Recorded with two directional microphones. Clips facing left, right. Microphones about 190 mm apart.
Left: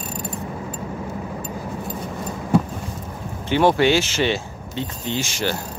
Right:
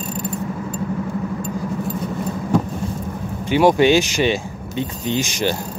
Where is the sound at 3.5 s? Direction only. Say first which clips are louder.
Right 3 dB; 15° right (ahead or behind).